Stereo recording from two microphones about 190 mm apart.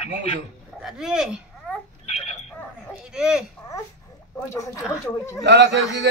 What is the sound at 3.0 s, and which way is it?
Speech, 5° right (ahead or behind).